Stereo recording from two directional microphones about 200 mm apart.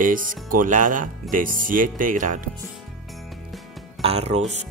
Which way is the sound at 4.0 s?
30° right (ahead or behind).